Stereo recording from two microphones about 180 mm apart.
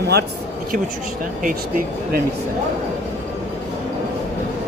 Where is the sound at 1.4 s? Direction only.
50° right (ahead or behind).